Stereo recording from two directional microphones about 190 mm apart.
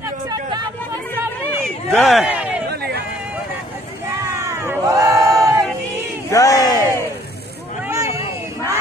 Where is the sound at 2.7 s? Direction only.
60° right (ahead or behind).